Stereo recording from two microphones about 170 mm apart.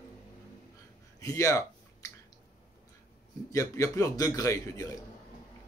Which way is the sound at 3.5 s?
20° left (ahead or behind).